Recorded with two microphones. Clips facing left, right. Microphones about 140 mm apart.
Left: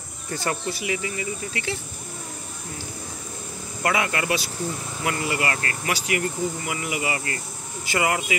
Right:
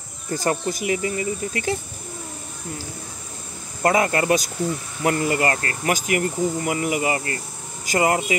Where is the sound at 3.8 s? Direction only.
40° right (ahead or behind).